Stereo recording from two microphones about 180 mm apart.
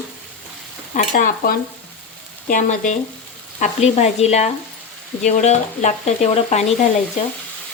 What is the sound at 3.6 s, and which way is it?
Speech, 40° left (ahead or behind).